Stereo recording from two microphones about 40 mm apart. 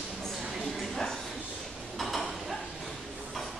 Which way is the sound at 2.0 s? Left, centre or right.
Centre.